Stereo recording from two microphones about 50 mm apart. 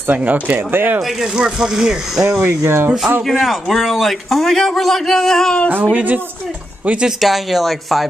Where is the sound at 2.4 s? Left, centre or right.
Right.